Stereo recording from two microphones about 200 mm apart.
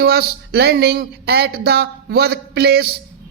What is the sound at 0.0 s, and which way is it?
Speech, 50° right (ahead or behind).